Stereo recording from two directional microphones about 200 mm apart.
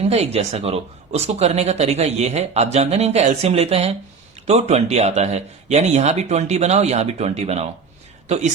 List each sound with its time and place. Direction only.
0.0 s speech: 30° right (ahead or behind)